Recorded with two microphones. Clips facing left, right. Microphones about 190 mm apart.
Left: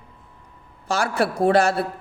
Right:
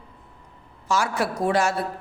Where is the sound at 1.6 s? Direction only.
30° left (ahead or behind).